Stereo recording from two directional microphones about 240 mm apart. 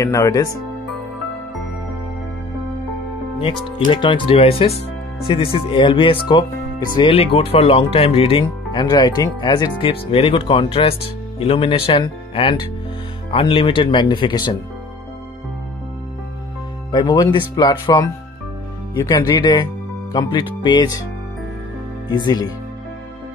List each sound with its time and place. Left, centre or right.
0.0 s speech: centre
3.3 s speech: left
16.9 s speech: centre
22.1 s speech: centre